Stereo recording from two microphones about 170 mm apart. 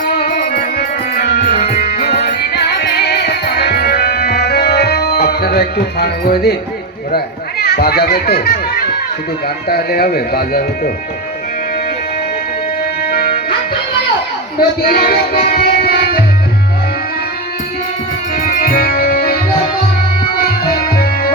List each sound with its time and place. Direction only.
0.0 s music: 70° left (ahead or behind)
7.6 s speech: 65° left (ahead or behind)
9.6 s speech: 65° left (ahead or behind)
13.1 s music: 65° left (ahead or behind)
14.8 s music: 60° left (ahead or behind)
18.3 s music: 55° left (ahead or behind)
21.0 s music: 65° left (ahead or behind)